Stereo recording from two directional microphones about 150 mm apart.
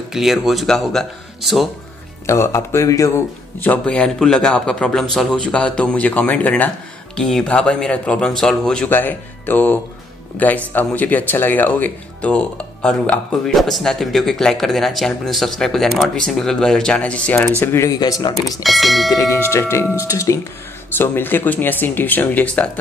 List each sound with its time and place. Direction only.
0.1 s speech: centre (ahead or behind)
2.2 s a man's voice: 15° left (ahead or behind)
17.6 s speech: 20° left (ahead or behind)
18.6 s speech: centre (ahead or behind)
19.1 s a man's voice: 25° left (ahead or behind)